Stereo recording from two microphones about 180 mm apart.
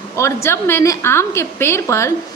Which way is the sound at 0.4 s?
15° left (ahead or behind).